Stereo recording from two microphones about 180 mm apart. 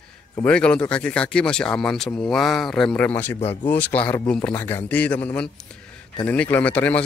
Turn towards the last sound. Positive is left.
turn(degrees=10)  # may be behind; listen again after turning